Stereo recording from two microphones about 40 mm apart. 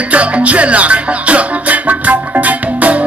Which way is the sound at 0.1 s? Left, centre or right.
Right.